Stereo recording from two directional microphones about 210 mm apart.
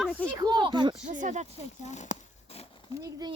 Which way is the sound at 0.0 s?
5° left (ahead or behind).